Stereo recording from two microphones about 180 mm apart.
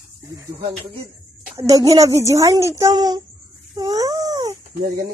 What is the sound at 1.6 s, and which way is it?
A woman's voice, 20° right (ahead or behind).